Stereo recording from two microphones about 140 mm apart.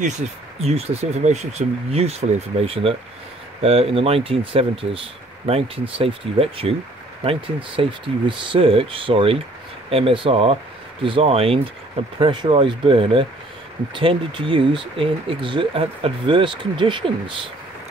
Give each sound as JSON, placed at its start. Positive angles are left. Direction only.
{"t": 0.6, "sound": "speech", "side_deg": -50}